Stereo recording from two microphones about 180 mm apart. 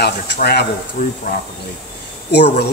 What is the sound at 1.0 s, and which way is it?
Speech, 45° left (ahead or behind).